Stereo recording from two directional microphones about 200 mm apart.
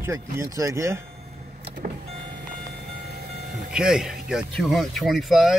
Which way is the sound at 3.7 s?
5° right (ahead or behind).